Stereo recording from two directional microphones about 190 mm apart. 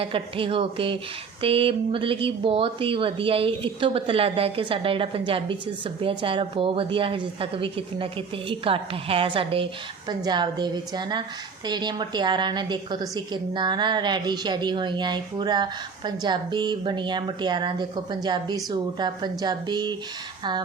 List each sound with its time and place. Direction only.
0.0 s a woman's voice: 30° right (ahead or behind)